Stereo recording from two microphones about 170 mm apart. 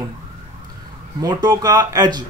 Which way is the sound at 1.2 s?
25° right (ahead or behind).